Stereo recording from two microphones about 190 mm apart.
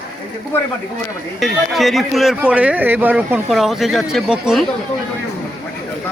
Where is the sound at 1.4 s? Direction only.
Centre (ahead or behind).